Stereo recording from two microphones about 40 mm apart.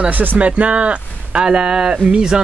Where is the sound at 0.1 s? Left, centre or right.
Right.